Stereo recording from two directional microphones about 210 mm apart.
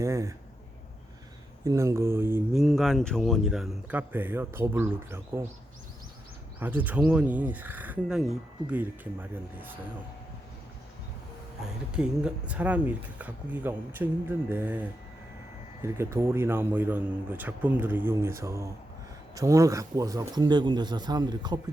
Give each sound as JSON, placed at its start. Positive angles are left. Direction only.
{"t": 0.0, "sound": "speech", "side_deg": -15}
{"t": 1.6, "sound": "speech", "side_deg": -15}
{"t": 6.6, "sound": "speech", "side_deg": -10}
{"t": 11.6, "sound": "a man's voice", "side_deg": -5}